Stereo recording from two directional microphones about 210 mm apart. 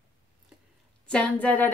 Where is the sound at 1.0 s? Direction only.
5° left (ahead or behind).